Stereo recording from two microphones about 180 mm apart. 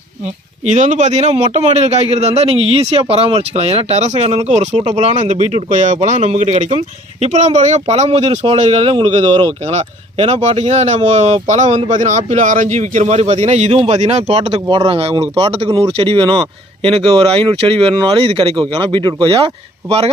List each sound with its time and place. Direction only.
0.6 s speech: 40° right (ahead or behind)